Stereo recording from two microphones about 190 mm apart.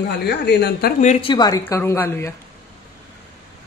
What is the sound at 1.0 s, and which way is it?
A man's voice, 25° left (ahead or behind).